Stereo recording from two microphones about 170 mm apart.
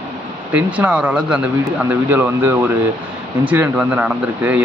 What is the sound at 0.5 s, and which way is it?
Speech, 10° right (ahead or behind).